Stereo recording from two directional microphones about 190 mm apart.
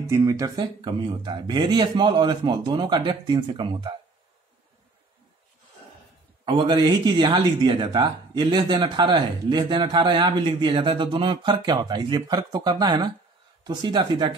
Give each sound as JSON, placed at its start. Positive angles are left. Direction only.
{"t": 0.1, "sound": "speech", "side_deg": -15}
{"t": 6.4, "sound": "speech", "side_deg": -25}